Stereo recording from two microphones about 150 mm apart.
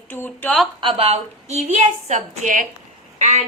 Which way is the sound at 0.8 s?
40° right (ahead or behind).